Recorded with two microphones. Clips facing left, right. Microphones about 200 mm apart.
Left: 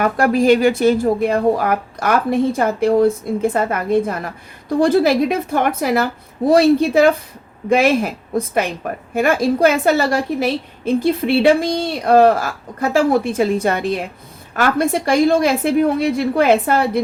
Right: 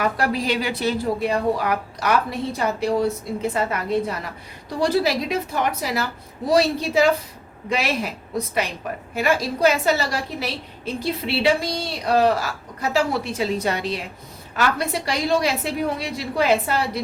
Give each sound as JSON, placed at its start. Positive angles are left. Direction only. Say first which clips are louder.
{"t": 0.0, "sound": "a woman's voice", "louder": "left 8 dB", "side_deg": 50}